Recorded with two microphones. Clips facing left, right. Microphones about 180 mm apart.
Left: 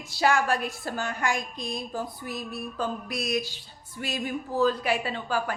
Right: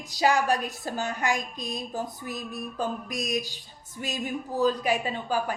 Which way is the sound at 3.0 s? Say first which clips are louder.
Left 1 dB; 40° right (ahead or behind).